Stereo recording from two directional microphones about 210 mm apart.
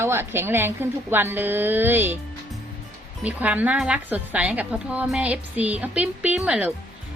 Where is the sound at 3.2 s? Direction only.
5° right (ahead or behind).